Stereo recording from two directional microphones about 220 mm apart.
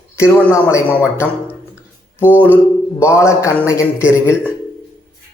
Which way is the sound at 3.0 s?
10° left (ahead or behind).